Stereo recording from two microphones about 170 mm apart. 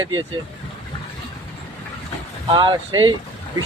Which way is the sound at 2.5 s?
25° right (ahead or behind).